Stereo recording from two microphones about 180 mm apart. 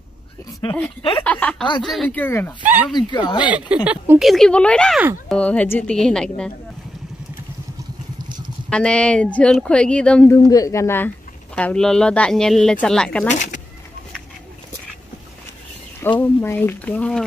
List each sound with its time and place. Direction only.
1.2 s speech: 5° left (ahead or behind)
2.0 s speech: 10° left (ahead or behind)
2.6 s speech: 10° right (ahead or behind)
3.1 s speech: 25° left (ahead or behind)
3.4 s speech: 5° right (ahead or behind)
8.2 s vehicle: 25° right (ahead or behind)
8.6 s speech: 5° left (ahead or behind)
10.5 s speech: 20° left (ahead or behind)
13.3 s speech: 45° left (ahead or behind)
16.0 s speech: 10° left (ahead or behind)